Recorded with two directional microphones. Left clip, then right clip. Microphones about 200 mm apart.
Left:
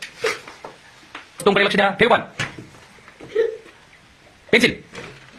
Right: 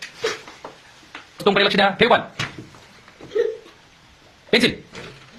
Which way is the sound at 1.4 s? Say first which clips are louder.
Even; 15° left (ahead or behind).